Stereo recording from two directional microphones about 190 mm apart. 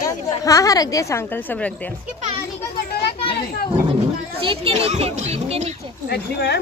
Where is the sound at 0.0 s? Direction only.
20° left (ahead or behind).